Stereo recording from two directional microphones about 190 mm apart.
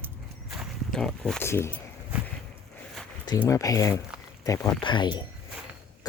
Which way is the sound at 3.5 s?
20° left (ahead or behind).